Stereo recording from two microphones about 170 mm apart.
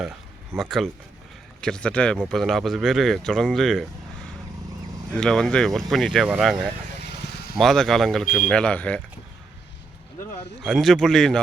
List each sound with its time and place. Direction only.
0.5 s speech: centre (ahead or behind)
5.1 s speech: 5° left (ahead or behind)
7.2 s vehicle: 70° left (ahead or behind)
7.5 s speech: centre (ahead or behind)
10.6 s speech: centre (ahead or behind)